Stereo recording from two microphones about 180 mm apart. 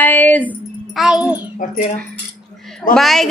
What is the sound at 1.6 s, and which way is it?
Speech, 45° left (ahead or behind).